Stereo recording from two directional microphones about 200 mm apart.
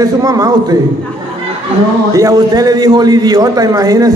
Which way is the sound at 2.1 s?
15° right (ahead or behind).